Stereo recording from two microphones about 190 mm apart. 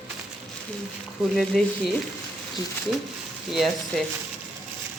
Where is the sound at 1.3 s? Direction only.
Centre (ahead or behind).